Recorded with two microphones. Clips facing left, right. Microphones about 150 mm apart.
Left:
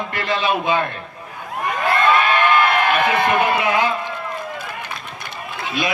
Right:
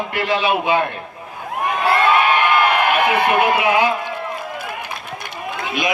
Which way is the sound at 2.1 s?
10° right (ahead or behind).